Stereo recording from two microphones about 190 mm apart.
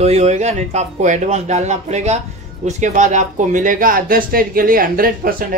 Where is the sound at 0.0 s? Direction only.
35° right (ahead or behind).